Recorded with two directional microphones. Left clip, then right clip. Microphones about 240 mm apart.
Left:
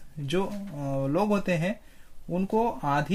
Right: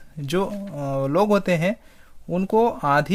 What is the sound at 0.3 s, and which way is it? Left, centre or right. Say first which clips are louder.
Speech: right 5 dB; right.